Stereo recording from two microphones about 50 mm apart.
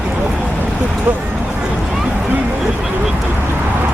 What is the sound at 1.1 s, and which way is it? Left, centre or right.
Speech, right.